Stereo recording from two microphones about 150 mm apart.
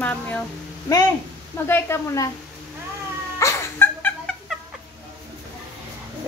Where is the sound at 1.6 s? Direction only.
15° left (ahead or behind).